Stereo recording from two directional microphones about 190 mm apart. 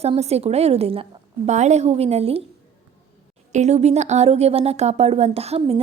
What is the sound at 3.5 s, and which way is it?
A woman's voice, 35° right (ahead or behind).